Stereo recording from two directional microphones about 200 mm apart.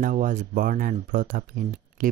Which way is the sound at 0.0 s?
40° right (ahead or behind).